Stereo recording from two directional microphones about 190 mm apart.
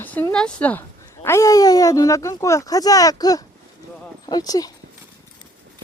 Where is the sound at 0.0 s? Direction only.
10° left (ahead or behind).